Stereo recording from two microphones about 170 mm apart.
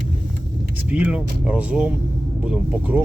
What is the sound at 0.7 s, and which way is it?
Speech, 10° right (ahead or behind).